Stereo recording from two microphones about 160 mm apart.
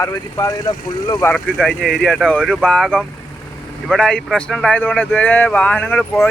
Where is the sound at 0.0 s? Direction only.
20° left (ahead or behind).